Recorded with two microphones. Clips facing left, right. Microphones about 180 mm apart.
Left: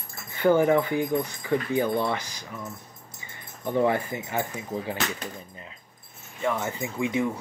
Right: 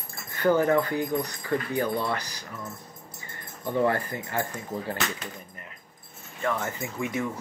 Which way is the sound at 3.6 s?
15° left (ahead or behind).